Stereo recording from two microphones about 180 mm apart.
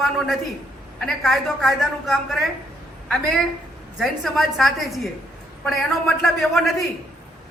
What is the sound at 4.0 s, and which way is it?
A man's voice, centre (ahead or behind).